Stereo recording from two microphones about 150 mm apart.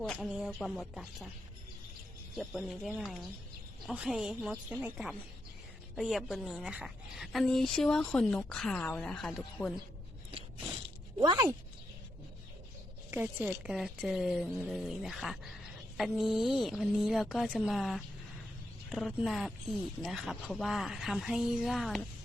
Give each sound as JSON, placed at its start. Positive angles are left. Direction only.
{"t": 0.0, "sound": "speech", "side_deg": 5}
{"t": 0.3, "sound": "a woman's voice", "side_deg": -5}
{"t": 2.3, "sound": "a woman's voice", "side_deg": 0}
{"t": 6.0, "sound": "a woman's voice", "side_deg": -5}
{"t": 11.2, "sound": "speech", "side_deg": -25}
{"t": 13.1, "sound": "a woman's voice", "side_deg": -10}